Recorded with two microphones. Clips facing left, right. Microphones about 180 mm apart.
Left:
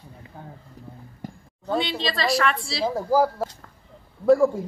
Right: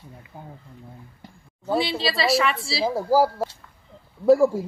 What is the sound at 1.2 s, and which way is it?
Speech, 45° left (ahead or behind).